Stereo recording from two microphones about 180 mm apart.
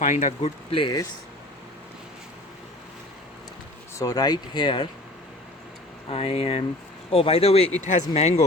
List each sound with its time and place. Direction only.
0.0 s speech: 45° left (ahead or behind); by 1.0 s 25° left (ahead or behind)
3.9 s speech: 20° left (ahead or behind)
6.1 s speech: 35° left (ahead or behind)